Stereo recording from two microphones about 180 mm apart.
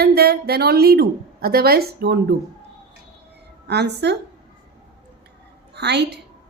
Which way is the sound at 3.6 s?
70° right (ahead or behind).